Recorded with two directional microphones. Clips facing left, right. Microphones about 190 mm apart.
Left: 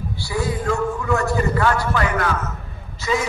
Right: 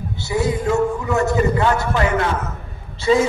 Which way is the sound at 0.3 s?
20° right (ahead or behind).